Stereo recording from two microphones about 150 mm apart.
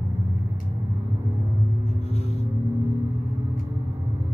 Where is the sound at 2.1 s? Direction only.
45° left (ahead or behind).